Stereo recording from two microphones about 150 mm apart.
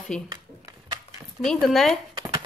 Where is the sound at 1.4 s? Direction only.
Centre (ahead or behind).